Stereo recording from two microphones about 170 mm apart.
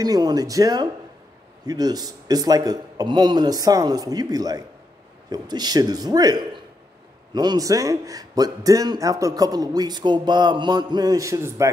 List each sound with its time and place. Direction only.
0.0 s a man's voice: 20° right (ahead or behind)